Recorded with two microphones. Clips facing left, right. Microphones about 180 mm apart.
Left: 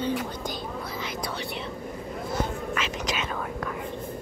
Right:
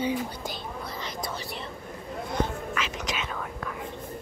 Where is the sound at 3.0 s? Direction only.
40° left (ahead or behind).